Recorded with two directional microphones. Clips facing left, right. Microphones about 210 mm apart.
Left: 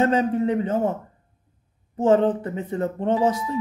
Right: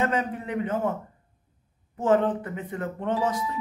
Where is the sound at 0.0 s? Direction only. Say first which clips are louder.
Left 7 dB; 30° left (ahead or behind).